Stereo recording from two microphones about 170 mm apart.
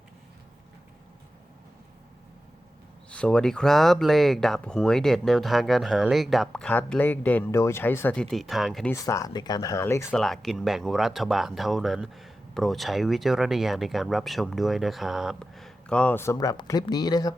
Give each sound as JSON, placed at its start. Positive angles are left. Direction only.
{"t": 3.1, "sound": "speech", "side_deg": 5}
{"t": 8.9, "sound": "speech", "side_deg": 20}
{"t": 10.2, "sound": "speech", "side_deg": 0}